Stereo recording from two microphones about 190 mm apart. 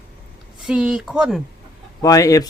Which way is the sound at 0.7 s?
5° right (ahead or behind).